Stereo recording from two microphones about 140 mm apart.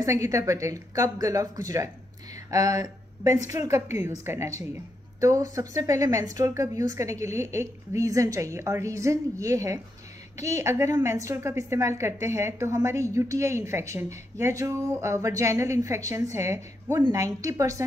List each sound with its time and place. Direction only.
0.0 s a woman's voice: 20° right (ahead or behind)
2.5 s a woman's voice: 25° right (ahead or behind)